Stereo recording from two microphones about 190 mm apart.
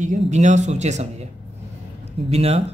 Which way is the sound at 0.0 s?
40° right (ahead or behind).